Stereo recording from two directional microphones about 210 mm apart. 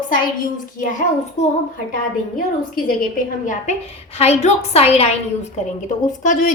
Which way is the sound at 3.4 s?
35° left (ahead or behind).